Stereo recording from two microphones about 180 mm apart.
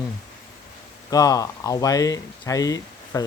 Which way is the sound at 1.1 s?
20° left (ahead or behind).